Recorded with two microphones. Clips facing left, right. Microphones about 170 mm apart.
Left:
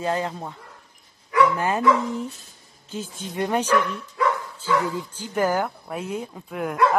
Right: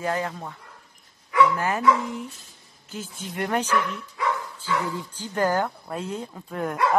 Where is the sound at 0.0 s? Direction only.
20° left (ahead or behind).